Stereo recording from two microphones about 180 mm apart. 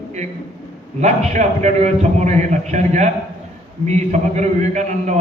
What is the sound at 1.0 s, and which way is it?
A man's voice, 40° right (ahead or behind).